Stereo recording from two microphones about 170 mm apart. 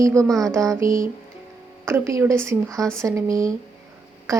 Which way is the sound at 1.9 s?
15° right (ahead or behind).